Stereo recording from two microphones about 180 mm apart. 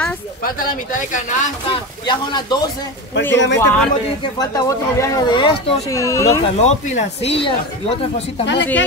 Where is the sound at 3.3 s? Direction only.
80° left.